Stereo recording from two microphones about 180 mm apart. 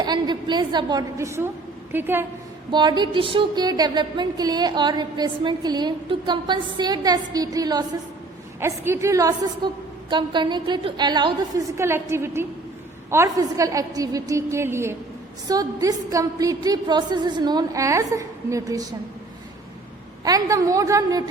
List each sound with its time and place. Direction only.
0.0 s a woman's voice: 25° right (ahead or behind)
2.7 s a woman's voice: 25° right (ahead or behind)
11.8 s a woman's voice: 15° right (ahead or behind)
20.2 s a woman's voice: 20° right (ahead or behind)